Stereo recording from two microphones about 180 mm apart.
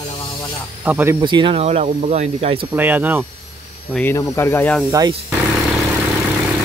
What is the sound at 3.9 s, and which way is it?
Speech, 10° left (ahead or behind).